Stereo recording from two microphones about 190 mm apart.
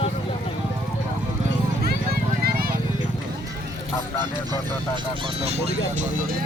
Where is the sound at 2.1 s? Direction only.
50° right (ahead or behind).